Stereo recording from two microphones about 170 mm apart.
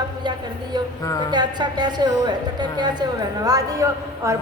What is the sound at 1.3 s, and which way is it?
A woman's voice, 25° right (ahead or behind).